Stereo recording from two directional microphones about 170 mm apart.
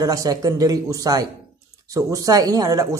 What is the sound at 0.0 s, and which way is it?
Speech, 20° right (ahead or behind).